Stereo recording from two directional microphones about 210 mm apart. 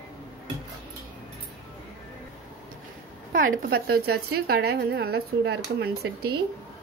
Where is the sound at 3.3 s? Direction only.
40° right (ahead or behind).